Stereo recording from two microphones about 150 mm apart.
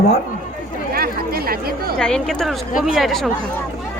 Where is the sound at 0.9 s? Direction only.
90° right.